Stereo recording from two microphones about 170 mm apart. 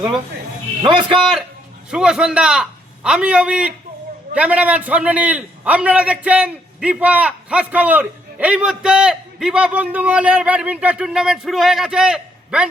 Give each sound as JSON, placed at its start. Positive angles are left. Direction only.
{"t": 0.8, "sound": "a man's voice", "side_deg": -25}
{"t": 1.9, "sound": "a man's voice", "side_deg": -5}